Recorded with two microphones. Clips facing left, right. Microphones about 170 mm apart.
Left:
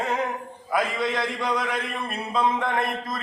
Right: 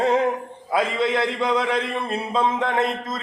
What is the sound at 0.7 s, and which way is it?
A man's voice, 25° right (ahead or behind).